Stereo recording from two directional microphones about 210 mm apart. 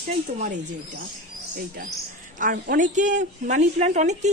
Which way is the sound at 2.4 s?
40° right (ahead or behind).